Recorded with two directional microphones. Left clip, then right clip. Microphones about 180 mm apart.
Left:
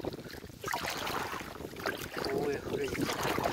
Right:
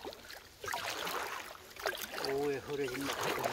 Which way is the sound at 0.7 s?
45° left (ahead or behind).